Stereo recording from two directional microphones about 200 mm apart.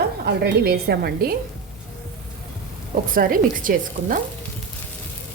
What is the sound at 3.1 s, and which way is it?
A woman's voice, 45° right (ahead or behind).